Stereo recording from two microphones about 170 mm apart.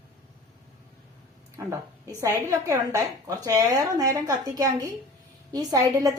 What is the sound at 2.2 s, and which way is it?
A woman's voice, 20° right (ahead or behind).